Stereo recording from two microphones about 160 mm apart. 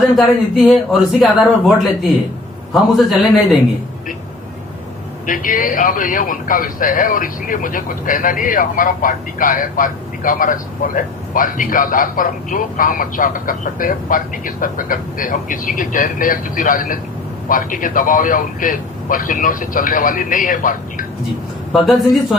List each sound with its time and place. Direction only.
0.2 s speech: centre (ahead or behind)
2.7 s speech: centre (ahead or behind)
5.2 s a man's voice: 55° left (ahead or behind)
21.7 s speech: centre (ahead or behind)